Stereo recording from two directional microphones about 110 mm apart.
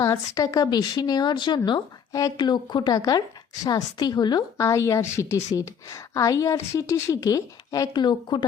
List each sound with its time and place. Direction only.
0.0 s speech: 30° left (ahead or behind)